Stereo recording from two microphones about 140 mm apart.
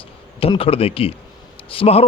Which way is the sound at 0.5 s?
40° left (ahead or behind).